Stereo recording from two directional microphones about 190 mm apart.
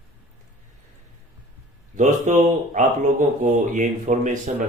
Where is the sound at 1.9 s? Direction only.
40° right (ahead or behind).